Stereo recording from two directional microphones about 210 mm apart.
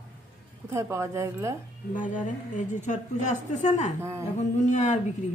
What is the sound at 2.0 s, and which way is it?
A woman's voice, 35° left (ahead or behind).